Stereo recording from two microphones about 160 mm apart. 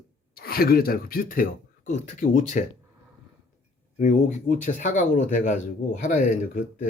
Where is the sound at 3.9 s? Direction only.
50° left (ahead or behind).